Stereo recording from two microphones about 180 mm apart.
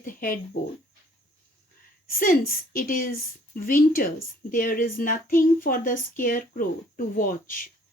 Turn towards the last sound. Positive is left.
turn(degrees=50)  # may be behind; listen again after turning